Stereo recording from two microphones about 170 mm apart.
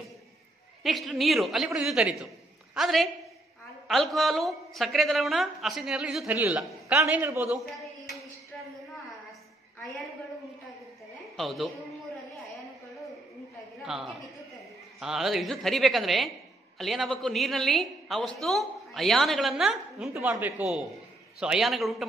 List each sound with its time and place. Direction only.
0.8 s a woman's voice: centre (ahead or behind)
11.3 s a woman's voice: centre (ahead or behind)
13.8 s a woman's voice: 5° right (ahead or behind)